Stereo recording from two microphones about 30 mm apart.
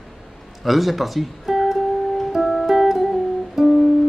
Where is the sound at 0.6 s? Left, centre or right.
Centre.